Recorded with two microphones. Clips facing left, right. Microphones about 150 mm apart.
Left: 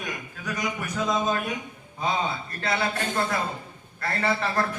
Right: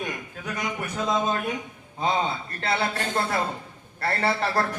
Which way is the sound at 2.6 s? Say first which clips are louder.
Even; 30° right (ahead or behind).